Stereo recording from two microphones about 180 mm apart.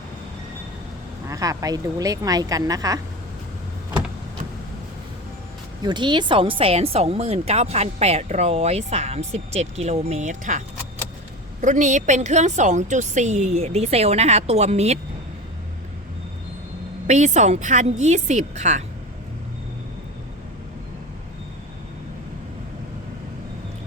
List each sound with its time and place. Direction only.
1.3 s a woman's voice: 20° right (ahead or behind)
5.8 s speech: 25° right (ahead or behind); by 10.6 s 45° right (ahead or behind)
11.6 s speech: 45° right (ahead or behind)
17.1 s speech: 40° right (ahead or behind)